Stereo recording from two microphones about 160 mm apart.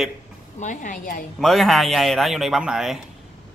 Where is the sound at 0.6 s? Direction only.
55° left (ahead or behind).